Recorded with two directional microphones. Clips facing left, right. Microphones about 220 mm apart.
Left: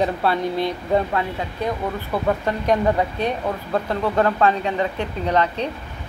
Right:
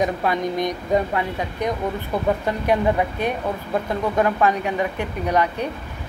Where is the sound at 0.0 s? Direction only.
15° right (ahead or behind).